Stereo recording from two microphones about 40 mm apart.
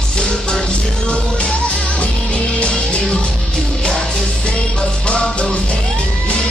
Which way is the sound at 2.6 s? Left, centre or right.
Left.